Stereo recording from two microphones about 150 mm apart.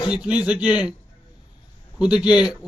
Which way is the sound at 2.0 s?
5° right (ahead or behind).